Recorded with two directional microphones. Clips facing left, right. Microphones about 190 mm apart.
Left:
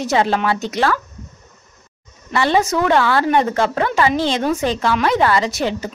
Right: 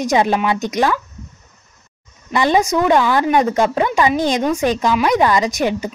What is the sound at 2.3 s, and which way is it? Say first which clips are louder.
Speech: right 1 dB; 15° right (ahead or behind).